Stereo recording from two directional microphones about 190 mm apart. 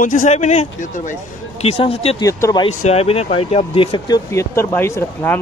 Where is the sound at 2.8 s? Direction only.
35° left (ahead or behind).